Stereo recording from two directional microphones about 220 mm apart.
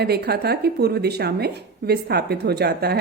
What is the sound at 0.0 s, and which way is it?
A woman's voice, 45° right (ahead or behind).